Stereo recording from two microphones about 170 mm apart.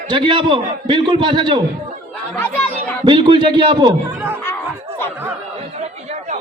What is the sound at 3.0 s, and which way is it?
Speech, 25° right (ahead or behind).